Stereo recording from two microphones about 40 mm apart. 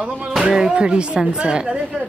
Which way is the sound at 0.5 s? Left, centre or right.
Centre.